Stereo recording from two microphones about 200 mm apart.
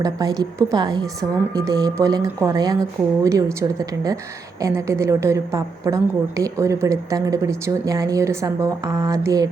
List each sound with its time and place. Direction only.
0.0 s a woman's voice: 20° right (ahead or behind)